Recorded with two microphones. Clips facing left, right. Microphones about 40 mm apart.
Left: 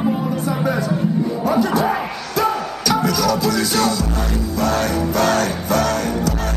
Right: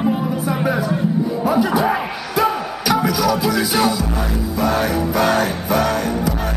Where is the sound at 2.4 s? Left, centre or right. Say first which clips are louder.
Right 1 dB; centre.